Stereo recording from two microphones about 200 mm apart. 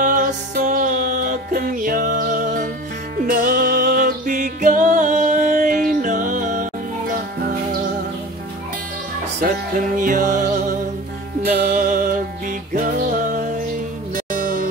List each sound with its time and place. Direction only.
0.0 s music: 45° right (ahead or behind)
9.4 s music: 45° right (ahead or behind)